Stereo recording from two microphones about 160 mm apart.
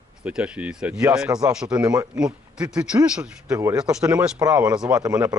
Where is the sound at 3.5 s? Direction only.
20° right (ahead or behind).